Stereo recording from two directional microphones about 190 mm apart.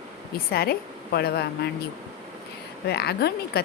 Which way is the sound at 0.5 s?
55° left (ahead or behind).